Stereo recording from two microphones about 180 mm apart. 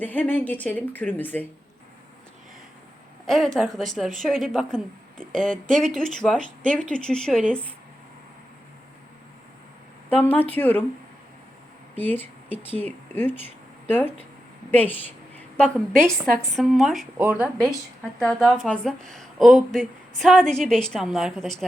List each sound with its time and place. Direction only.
0.0 s a woman's voice: 10° left (ahead or behind)
3.2 s a woman's voice: 5° left (ahead or behind)
5.3 s speech: 45° right (ahead or behind)
5.8 s a woman's voice: 5° left (ahead or behind)
10.2 s a woman's voice: 10° left (ahead or behind)
11.9 s a woman's voice: 10° left (ahead or behind)